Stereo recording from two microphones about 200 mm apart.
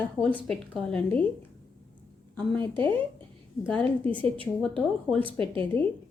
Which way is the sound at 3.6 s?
5° left (ahead or behind).